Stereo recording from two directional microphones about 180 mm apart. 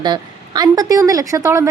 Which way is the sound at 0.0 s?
25° right (ahead or behind).